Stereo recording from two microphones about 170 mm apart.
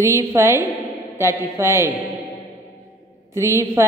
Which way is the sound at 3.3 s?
15° right (ahead or behind).